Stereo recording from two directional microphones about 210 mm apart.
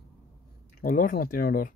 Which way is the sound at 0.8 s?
40° left (ahead or behind).